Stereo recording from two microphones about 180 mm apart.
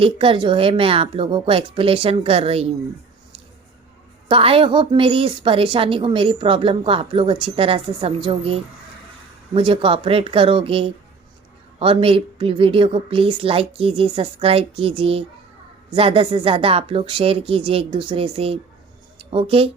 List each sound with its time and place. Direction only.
0.0 s a woman's voice: 30° right (ahead or behind)
4.3 s a woman's voice: 30° right (ahead or behind)